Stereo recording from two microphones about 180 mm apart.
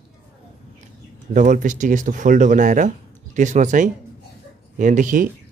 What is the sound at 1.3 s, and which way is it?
Speech, 45° right (ahead or behind).